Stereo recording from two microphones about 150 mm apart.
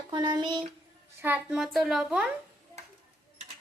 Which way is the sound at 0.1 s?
30° right (ahead or behind).